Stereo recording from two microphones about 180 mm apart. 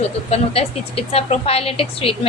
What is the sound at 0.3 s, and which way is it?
A woman's voice, 35° left (ahead or behind).